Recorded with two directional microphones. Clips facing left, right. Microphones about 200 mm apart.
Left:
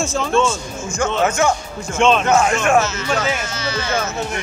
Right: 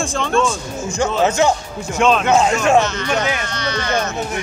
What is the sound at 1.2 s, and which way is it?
Speech, 20° right (ahead or behind).